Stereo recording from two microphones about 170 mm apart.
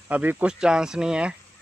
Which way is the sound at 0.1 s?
10° right (ahead or behind).